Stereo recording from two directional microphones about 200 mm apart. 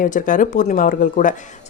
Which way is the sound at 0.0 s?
40° left (ahead or behind).